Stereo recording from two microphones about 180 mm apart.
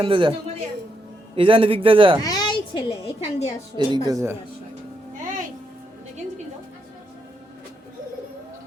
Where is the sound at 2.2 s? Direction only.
20° left (ahead or behind).